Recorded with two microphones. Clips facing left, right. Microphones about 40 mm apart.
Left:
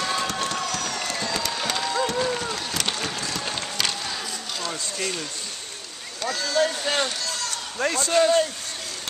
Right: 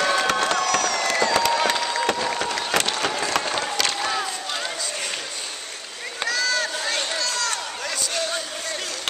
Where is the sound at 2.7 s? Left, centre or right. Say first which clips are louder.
Right 9 dB; right.